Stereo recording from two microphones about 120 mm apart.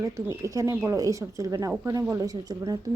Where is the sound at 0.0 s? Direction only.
25° right (ahead or behind).